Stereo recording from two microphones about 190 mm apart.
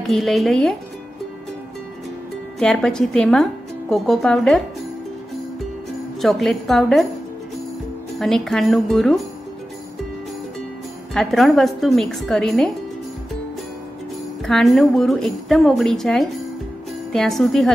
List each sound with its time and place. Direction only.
0.0 s speech: centre (ahead or behind)
2.6 s speech: 5° left (ahead or behind)
6.2 s speech: centre (ahead or behind)
8.2 s speech: centre (ahead or behind)
11.1 s speech: centre (ahead or behind)
14.4 s speech: centre (ahead or behind)